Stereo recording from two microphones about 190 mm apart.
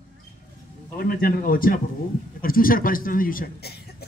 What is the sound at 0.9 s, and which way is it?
A man's voice, 50° left (ahead or behind).